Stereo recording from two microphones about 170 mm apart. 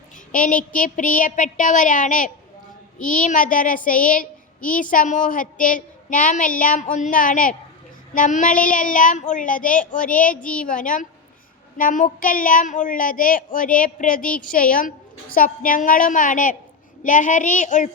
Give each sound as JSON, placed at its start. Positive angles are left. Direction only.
{"t": 0.3, "sound": "speech", "side_deg": 50}
{"t": 10.1, "sound": "speech", "side_deg": 10}
{"t": 10.7, "sound": "speech", "side_deg": 50}
{"t": 14.2, "sound": "speech", "side_deg": 5}
{"t": 14.5, "sound": "speech", "side_deg": 55}